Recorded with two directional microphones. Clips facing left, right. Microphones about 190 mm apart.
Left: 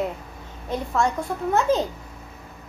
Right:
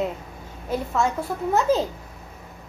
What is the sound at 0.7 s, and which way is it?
A child's voice, 5° right (ahead or behind).